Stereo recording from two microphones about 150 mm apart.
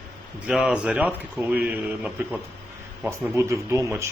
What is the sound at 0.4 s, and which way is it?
Speech, 5° right (ahead or behind).